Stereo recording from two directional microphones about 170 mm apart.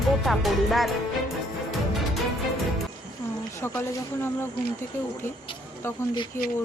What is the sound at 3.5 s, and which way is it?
Speech, 15° left (ahead or behind).